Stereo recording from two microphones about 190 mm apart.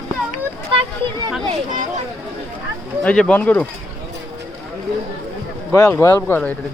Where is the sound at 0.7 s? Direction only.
30° right (ahead or behind).